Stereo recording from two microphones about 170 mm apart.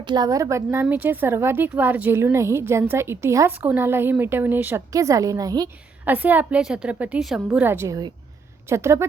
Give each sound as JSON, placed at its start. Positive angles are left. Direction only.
{"t": 0.0, "sound": "a woman's voice", "side_deg": -25}
{"t": 6.1, "sound": "a woman's voice", "side_deg": -10}